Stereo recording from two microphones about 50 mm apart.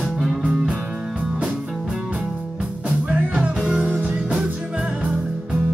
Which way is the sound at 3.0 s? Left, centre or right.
Right.